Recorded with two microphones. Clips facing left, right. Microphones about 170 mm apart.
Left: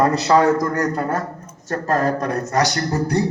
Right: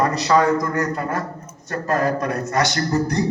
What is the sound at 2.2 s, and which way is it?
Speech, 40° left (ahead or behind).